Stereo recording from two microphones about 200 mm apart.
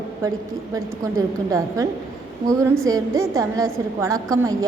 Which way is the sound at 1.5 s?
15° right (ahead or behind).